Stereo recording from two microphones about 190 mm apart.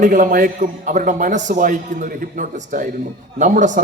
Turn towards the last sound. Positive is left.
turn(degrees=-40)  # may be behind; listen again after turning